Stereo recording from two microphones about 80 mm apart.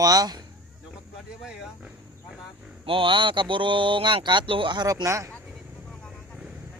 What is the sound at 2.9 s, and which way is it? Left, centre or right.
Speech, right.